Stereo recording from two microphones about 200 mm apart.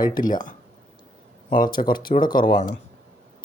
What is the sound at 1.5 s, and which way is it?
Speech, 45° left (ahead or behind).